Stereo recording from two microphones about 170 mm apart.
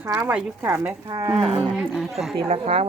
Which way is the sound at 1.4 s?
35° right (ahead or behind).